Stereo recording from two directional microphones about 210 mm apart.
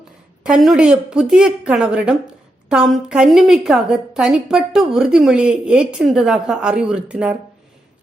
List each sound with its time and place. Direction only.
0.4 s a woman's voice: centre (ahead or behind)